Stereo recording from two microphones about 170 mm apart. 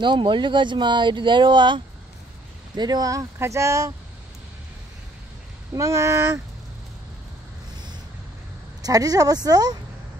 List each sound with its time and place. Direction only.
0.0 s speech: 30° right (ahead or behind)
5.8 s speech: 15° right (ahead or behind)
8.8 s speech: 20° right (ahead or behind)